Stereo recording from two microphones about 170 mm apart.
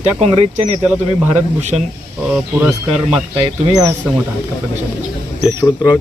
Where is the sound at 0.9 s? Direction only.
10° right (ahead or behind).